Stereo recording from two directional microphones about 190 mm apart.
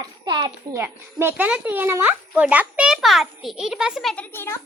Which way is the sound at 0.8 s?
10° right (ahead or behind).